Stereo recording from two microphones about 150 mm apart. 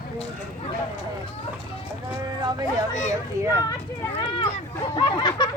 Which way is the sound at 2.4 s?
30° right (ahead or behind).